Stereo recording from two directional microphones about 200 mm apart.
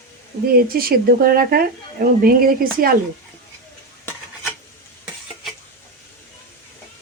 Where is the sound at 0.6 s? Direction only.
50° right (ahead or behind).